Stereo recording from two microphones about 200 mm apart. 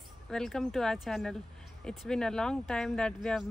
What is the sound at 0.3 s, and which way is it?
Speech, centre (ahead or behind).